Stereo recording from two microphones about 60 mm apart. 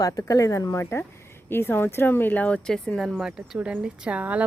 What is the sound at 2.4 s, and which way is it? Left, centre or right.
Speech, centre.